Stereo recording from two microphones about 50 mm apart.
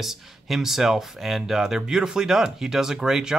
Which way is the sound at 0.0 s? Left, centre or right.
Centre.